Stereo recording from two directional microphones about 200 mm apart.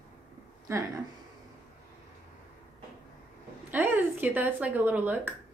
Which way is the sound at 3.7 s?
10° right (ahead or behind).